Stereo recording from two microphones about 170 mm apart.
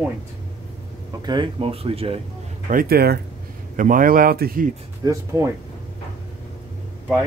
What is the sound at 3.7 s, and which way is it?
Speech, 50° right (ahead or behind).